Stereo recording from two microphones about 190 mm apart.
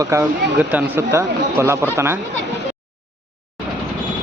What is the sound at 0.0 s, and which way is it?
Speech, 15° right (ahead or behind).